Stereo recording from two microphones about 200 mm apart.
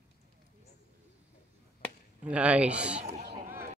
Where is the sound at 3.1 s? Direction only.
35° right (ahead or behind).